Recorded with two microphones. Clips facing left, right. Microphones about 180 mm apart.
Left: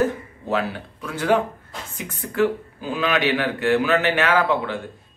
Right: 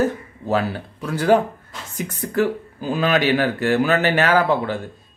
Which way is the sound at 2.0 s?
40° right (ahead or behind).